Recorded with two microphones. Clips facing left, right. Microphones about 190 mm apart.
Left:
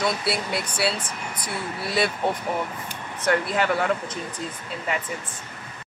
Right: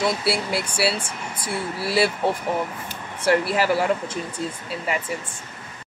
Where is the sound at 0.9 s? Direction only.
25° right (ahead or behind).